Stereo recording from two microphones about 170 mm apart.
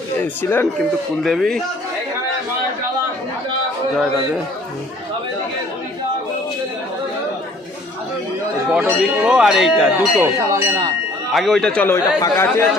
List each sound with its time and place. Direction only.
0.2 s speech: 10° left (ahead or behind)
1.2 s speech: centre (ahead or behind)
8.7 s speech: 5° right (ahead or behind)
10.2 s speech: 15° right (ahead or behind)
11.3 s speech: centre (ahead or behind)